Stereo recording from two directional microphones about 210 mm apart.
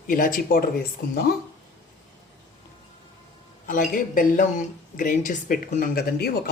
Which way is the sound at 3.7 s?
40° left (ahead or behind).